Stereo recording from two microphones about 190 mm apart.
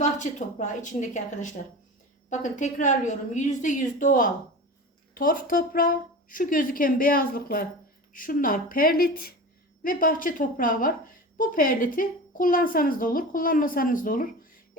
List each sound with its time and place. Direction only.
0.0 s a woman's voice: 40° left (ahead or behind)